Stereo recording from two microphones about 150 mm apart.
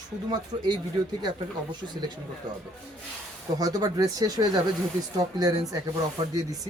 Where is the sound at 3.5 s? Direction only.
25° right (ahead or behind).